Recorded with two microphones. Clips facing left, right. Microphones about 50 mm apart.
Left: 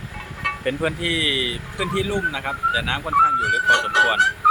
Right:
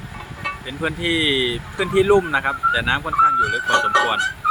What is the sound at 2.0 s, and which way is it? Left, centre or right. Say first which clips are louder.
Speech: right 8 dB; right.